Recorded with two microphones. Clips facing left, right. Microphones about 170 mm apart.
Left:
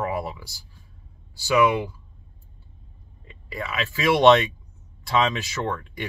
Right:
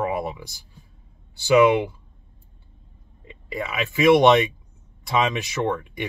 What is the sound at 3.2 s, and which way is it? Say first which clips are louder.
Speech: right 3 dB; 20° right (ahead or behind).